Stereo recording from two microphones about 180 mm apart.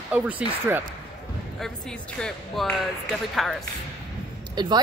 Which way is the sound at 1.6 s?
5° left (ahead or behind).